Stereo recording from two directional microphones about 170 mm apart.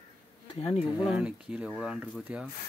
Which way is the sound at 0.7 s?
5° right (ahead or behind).